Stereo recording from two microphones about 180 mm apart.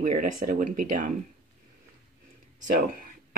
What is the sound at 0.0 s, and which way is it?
Speech, 45° right (ahead or behind).